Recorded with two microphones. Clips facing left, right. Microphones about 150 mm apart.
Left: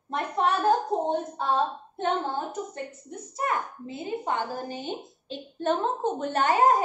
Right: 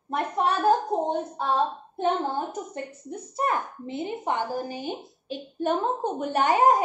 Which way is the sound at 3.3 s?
30° right (ahead or behind).